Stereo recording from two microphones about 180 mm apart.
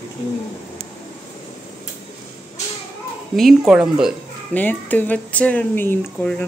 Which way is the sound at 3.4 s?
Centre (ahead or behind).